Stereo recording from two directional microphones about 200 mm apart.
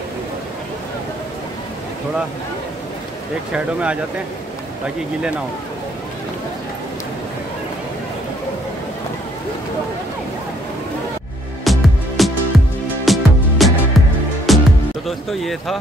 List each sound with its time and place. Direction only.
3.5 s speech: 5° right (ahead or behind)
11.6 s music: centre (ahead or behind)
15.0 s speech: centre (ahead or behind)